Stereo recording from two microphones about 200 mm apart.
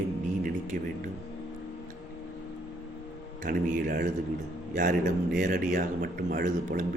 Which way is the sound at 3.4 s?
45° right (ahead or behind).